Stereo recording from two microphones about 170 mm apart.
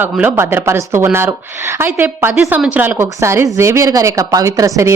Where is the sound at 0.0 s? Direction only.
10° right (ahead or behind).